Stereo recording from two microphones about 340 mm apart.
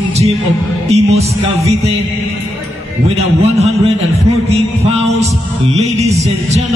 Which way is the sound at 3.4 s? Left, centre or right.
Centre.